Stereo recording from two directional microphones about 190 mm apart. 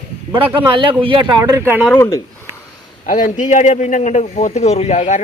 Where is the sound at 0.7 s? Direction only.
25° right (ahead or behind).